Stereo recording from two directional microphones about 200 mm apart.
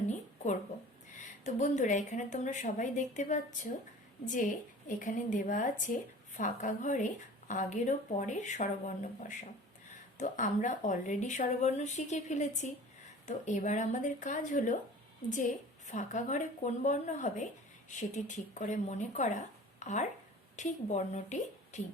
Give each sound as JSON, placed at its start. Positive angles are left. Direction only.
{"t": 1.5, "sound": "speech", "side_deg": 35}
{"t": 15.9, "sound": "speech", "side_deg": 35}